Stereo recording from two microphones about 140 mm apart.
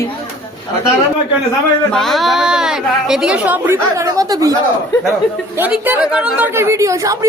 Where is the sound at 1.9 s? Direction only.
Centre (ahead or behind); by 4.6 s 25° right (ahead or behind).